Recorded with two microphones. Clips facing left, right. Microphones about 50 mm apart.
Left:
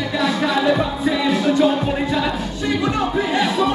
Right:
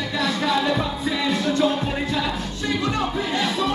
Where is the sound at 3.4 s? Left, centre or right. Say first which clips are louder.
Left 4 dB; centre.